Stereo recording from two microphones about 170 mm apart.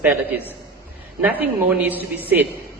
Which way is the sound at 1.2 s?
10° right (ahead or behind).